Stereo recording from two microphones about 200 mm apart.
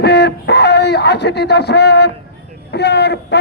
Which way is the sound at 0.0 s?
55° left (ahead or behind).